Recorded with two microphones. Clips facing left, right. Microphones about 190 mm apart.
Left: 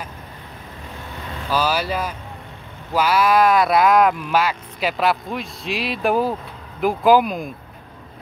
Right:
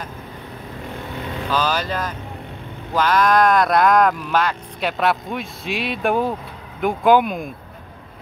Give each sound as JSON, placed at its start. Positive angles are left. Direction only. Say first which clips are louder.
{"t": 1.5, "sound": "speech", "louder": "left 1 dB", "side_deg": 10}